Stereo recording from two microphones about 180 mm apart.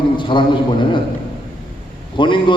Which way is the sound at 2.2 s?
25° left (ahead or behind).